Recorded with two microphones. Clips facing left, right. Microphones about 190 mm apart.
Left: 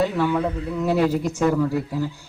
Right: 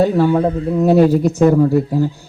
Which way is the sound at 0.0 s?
35° right (ahead or behind).